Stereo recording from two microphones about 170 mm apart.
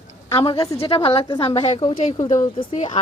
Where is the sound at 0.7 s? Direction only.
35° left (ahead or behind).